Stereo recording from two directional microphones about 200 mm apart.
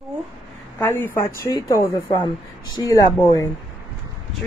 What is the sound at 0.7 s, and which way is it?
A woman's voice, 10° left (ahead or behind).